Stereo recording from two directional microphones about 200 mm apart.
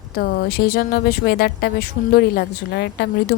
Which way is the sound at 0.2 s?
50° left (ahead or behind).